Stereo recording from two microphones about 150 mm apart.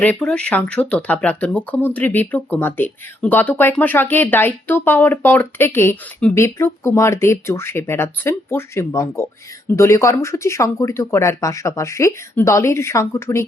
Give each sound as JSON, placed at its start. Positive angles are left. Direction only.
{"t": 0.0, "sound": "speech", "side_deg": 10}